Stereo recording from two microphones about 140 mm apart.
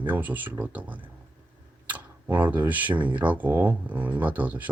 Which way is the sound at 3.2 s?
10° right (ahead or behind).